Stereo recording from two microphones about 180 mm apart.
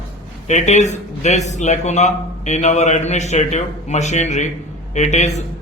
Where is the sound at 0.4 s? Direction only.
40° left (ahead or behind).